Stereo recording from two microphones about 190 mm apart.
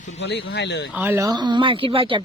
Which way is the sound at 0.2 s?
65° left (ahead or behind).